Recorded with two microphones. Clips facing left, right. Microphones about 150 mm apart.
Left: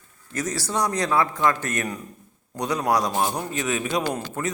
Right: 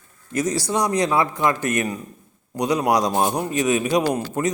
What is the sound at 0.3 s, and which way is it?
A man's voice, 15° right (ahead or behind).